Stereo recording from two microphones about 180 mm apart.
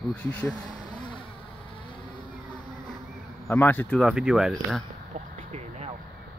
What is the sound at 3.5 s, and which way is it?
Speech, 10° left (ahead or behind).